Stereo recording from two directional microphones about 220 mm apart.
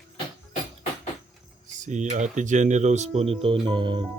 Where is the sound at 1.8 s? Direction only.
35° right (ahead or behind).